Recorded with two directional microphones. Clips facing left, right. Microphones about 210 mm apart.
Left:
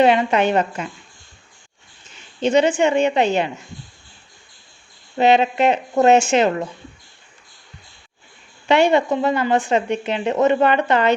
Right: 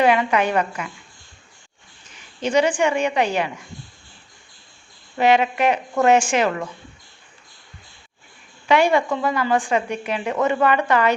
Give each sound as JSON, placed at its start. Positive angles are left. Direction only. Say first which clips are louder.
{"t": 0.0, "sound": "speech", "louder": "left 3 dB", "side_deg": 25}
{"t": 2.1, "sound": "speech", "louder": "left 3 dB", "side_deg": 25}
{"t": 5.1, "sound": "speech", "louder": "left 2 dB", "side_deg": 25}
{"t": 8.6, "sound": "speech", "louder": "left 2 dB", "side_deg": 25}